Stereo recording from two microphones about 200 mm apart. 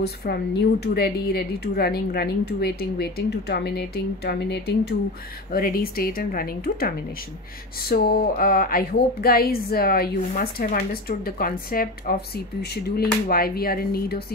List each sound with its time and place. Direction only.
0.0 s speech: 55° left (ahead or behind)